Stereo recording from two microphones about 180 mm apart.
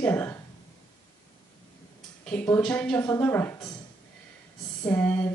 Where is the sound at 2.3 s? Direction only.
5° left (ahead or behind).